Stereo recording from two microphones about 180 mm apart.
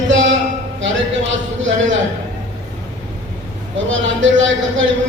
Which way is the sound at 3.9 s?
90° right.